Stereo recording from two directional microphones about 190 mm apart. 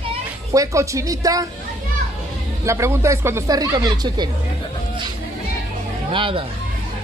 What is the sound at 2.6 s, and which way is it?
Speech, 15° right (ahead or behind).